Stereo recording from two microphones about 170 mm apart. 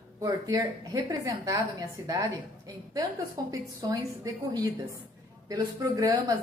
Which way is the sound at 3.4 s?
20° right (ahead or behind).